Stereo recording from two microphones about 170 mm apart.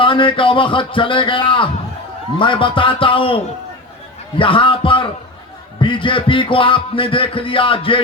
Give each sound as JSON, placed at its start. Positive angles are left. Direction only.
{"t": 0.0, "sound": "speech", "side_deg": 30}
{"t": 2.4, "sound": "music", "side_deg": 30}